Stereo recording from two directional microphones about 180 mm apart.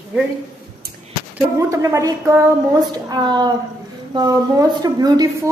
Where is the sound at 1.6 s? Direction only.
15° right (ahead or behind).